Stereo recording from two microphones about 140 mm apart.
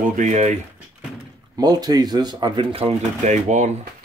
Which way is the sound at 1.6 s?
30° right (ahead or behind).